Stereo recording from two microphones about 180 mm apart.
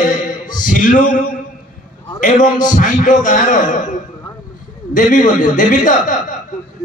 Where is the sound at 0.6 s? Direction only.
50° left (ahead or behind).